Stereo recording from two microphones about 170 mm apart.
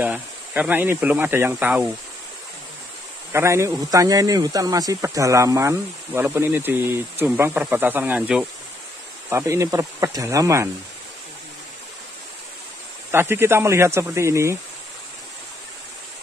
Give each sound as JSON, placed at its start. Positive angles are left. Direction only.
{"t": 0.0, "sound": "speech", "side_deg": -10}
{"t": 3.3, "sound": "speech", "side_deg": -15}
{"t": 9.3, "sound": "speech", "side_deg": -15}
{"t": 13.1, "sound": "speech", "side_deg": -15}